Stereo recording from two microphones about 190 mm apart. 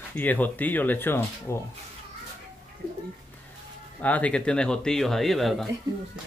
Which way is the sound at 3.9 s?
10° left (ahead or behind).